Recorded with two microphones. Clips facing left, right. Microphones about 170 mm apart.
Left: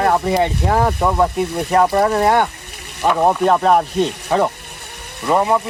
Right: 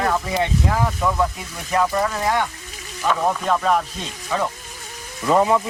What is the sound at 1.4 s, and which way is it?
Speech, 65° left (ahead or behind).